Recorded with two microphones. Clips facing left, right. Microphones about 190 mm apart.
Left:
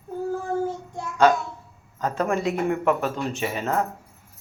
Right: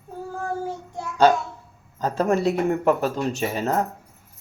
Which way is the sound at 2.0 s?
35° right (ahead or behind).